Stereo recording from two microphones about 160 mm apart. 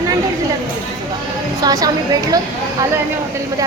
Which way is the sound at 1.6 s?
20° right (ahead or behind).